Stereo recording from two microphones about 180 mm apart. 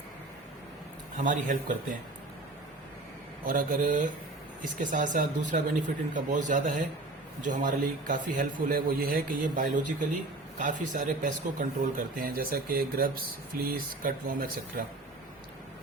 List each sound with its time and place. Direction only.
1.1 s a man's voice: 45° right (ahead or behind)
3.4 s a man's voice: 50° right (ahead or behind)